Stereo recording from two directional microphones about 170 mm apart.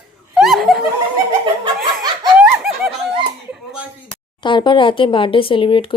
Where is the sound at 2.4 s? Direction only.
5° right (ahead or behind).